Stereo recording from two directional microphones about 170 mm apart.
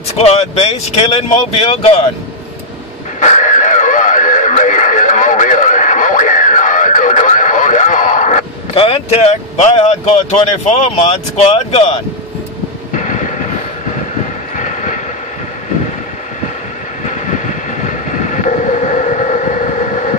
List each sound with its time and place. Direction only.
0.2 s speech: 40° left (ahead or behind)
3.2 s radio: 45° left (ahead or behind)
8.7 s speech: 30° left (ahead or behind)
12.9 s vehicle: 50° left (ahead or behind)
14.6 s vehicle: 45° left (ahead or behind)
17.0 s vehicle: 45° left (ahead or behind)